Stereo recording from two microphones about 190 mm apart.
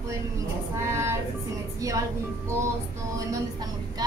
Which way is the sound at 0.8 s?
15° right (ahead or behind).